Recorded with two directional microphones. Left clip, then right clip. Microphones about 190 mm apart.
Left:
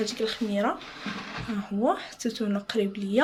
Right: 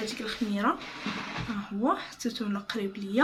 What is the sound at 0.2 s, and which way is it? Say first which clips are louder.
Speech: left 3 dB; 35° left (ahead or behind).